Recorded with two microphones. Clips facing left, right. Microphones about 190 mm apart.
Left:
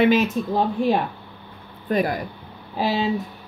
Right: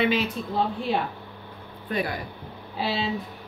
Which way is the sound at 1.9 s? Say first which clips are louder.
Left 7 dB; 45° left (ahead or behind).